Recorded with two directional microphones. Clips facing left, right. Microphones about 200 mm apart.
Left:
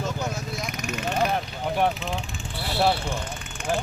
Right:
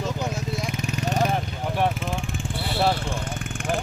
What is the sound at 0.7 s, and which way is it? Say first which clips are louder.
Vehicle: even; 35° right (ahead or behind).